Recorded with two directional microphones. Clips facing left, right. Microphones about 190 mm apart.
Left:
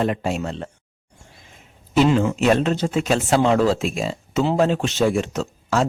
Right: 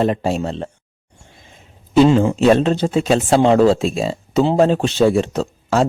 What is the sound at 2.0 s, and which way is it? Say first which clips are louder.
Speech: right 5 dB; 30° right (ahead or behind).